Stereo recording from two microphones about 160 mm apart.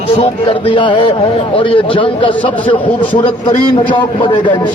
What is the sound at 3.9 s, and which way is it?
Speech, 30° left (ahead or behind).